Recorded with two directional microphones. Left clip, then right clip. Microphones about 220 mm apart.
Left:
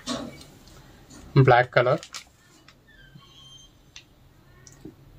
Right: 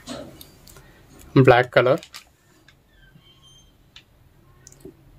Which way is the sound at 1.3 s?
50° right (ahead or behind).